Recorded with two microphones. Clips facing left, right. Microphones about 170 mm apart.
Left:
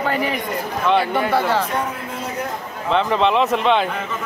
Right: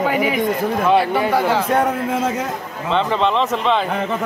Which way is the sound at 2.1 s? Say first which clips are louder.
Right 7 dB; 90° right.